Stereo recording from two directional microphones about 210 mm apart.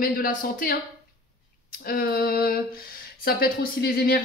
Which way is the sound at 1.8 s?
45° left (ahead or behind).